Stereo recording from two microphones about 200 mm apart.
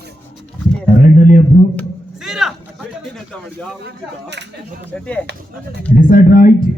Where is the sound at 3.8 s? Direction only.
60° right (ahead or behind).